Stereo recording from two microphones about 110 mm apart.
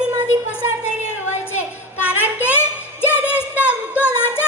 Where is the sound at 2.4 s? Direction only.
20° left (ahead or behind).